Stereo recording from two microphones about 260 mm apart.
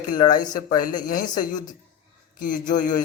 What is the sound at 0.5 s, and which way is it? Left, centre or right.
Speech, left.